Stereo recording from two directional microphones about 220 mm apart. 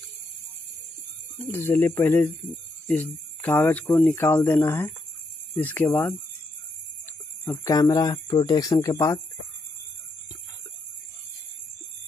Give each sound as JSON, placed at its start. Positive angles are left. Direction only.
{"t": 1.7, "sound": "speech", "side_deg": 10}
{"t": 3.4, "sound": "speech", "side_deg": 10}
{"t": 7.4, "sound": "speech", "side_deg": 15}